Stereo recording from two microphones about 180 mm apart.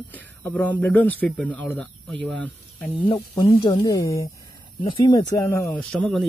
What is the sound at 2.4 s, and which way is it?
Snake, 10° left (ahead or behind).